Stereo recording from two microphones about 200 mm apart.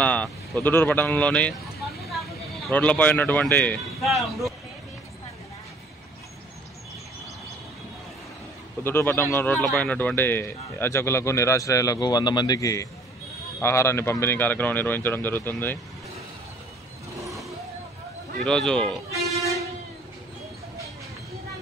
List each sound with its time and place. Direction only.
0.0 s speech: 5° left (ahead or behind)
2.7 s speech: 5° left (ahead or behind)
8.8 s speech: 10° left (ahead or behind)
18.4 s speech: 5° left (ahead or behind)